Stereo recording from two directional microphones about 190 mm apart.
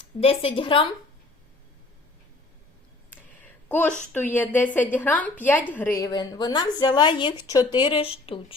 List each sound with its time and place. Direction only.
0.2 s a woman's voice: 30° left (ahead or behind)
3.1 s a sound: 10° left (ahead or behind)
4.1 s a woman's voice: 10° left (ahead or behind); by 8.5 s 30° left (ahead or behind)